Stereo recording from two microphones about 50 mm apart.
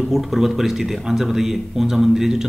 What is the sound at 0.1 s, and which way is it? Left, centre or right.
A man's voice, centre.